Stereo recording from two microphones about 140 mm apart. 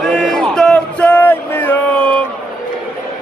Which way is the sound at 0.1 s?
5° left (ahead or behind).